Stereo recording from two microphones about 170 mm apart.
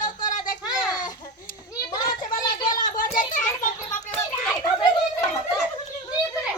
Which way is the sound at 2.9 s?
50° left (ahead or behind).